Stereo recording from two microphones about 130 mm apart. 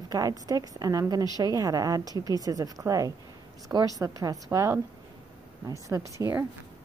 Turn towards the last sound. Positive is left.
turn(degrees=-25)  # may be behind; listen again after turning